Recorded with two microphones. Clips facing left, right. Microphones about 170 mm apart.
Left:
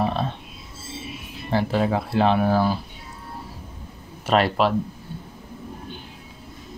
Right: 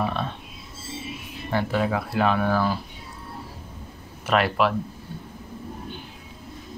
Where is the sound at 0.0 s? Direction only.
35° left (ahead or behind).